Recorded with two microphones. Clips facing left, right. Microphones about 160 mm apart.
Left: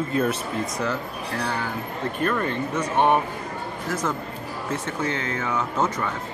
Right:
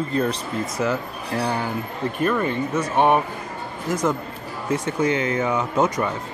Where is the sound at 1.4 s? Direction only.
15° right (ahead or behind).